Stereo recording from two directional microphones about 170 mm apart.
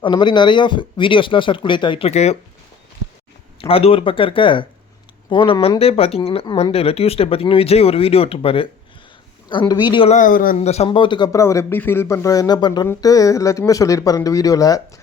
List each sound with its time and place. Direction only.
0.0 s speech: 25° left (ahead or behind)
3.6 s speech: 35° left (ahead or behind)
10.2 s speech: 55° left (ahead or behind)
10.6 s speech: 40° left (ahead or behind); by 14.8 s 20° left (ahead or behind)